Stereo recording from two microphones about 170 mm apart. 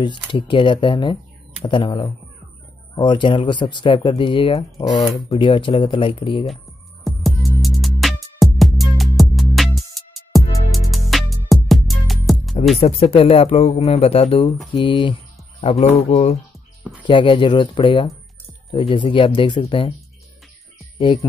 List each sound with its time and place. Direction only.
0.0 s speech: 30° left (ahead or behind)
7.1 s music: centre (ahead or behind)
12.7 s speech: 35° left (ahead or behind)
17.0 s speech: 30° left (ahead or behind)
21.0 s speech: 30° left (ahead or behind)